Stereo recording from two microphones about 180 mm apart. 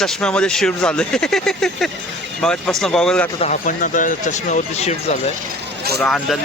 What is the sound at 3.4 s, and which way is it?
Speech, 45° left (ahead or behind).